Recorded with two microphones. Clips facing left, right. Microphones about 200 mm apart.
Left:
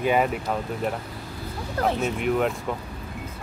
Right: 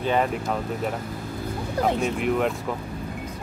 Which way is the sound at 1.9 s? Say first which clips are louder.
Even; centre (ahead or behind).